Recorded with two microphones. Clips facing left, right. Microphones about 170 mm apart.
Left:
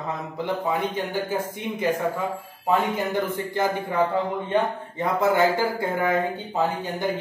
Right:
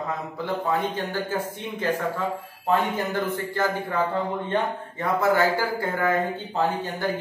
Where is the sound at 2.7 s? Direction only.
15° left (ahead or behind).